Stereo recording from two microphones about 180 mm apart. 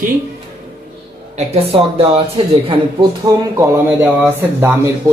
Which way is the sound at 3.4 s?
15° right (ahead or behind).